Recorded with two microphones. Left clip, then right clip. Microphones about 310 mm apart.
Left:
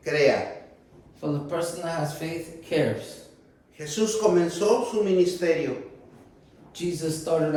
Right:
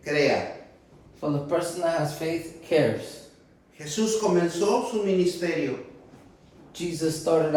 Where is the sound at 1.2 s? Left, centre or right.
Centre.